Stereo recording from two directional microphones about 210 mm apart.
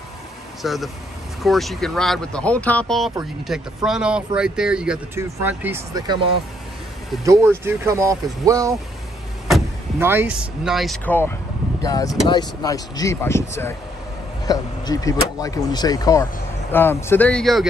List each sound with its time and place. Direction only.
0.6 s speech: centre (ahead or behind)
7.2 s speech: 10° right (ahead or behind)
9.9 s speech: 10° right (ahead or behind)